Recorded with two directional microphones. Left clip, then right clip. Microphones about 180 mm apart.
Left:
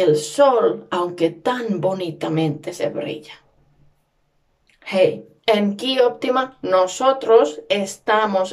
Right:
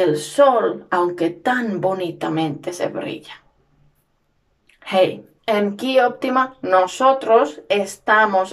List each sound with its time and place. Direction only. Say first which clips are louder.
0.0 s a woman's voice: even; 5° left (ahead or behind)
4.8 s a woman's voice: even; 5° left (ahead or behind)